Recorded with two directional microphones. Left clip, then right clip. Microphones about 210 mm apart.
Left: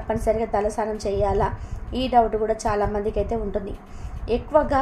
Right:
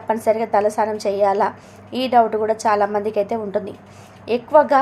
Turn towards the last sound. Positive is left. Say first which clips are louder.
# right 6 dB
turn(degrees=-15)  # may be behind; listen again after turning